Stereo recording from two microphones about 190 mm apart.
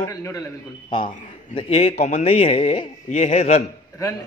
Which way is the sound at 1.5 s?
30° left (ahead or behind).